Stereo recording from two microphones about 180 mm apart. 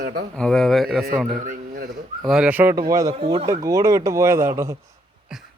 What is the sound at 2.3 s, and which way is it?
Speech, 5° right (ahead or behind).